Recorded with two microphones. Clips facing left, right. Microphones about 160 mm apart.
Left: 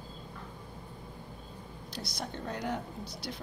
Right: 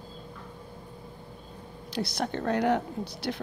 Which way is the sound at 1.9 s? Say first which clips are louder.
Right 10 dB; 75° right (ahead or behind).